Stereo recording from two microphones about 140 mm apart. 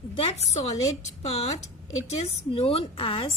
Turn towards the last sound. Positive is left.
turn(degrees=40)  # may be behind; listen again after turning